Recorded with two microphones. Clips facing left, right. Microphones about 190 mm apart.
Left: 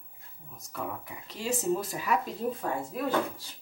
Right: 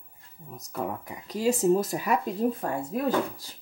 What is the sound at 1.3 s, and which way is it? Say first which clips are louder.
Speech: right 7 dB; 40° right (ahead or behind).